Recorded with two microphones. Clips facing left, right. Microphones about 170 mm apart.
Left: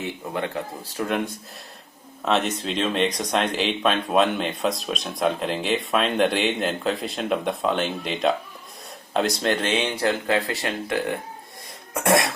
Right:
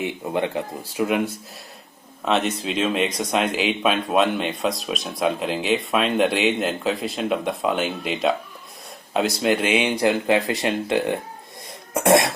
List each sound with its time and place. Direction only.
0.0 s speech: 20° right (ahead or behind)
11.9 s cough: 20° right (ahead or behind)